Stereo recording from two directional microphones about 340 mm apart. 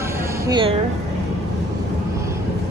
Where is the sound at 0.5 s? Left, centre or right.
Centre.